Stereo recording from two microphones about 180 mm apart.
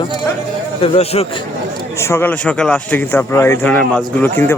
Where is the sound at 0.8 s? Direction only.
35° left (ahead or behind).